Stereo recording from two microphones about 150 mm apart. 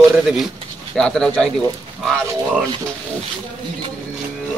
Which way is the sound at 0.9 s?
5° left (ahead or behind).